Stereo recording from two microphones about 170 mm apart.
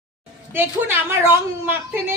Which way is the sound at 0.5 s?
15° right (ahead or behind).